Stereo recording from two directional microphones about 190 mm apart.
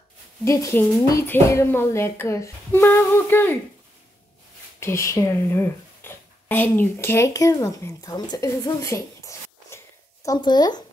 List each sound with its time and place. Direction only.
0.5 s speech: 15° left (ahead or behind)
4.7 s speech: 15° left (ahead or behind)